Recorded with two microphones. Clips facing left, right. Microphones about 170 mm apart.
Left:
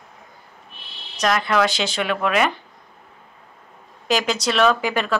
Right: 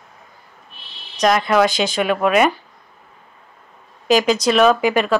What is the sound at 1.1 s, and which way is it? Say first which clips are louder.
Speech: right 4 dB; 15° right (ahead or behind).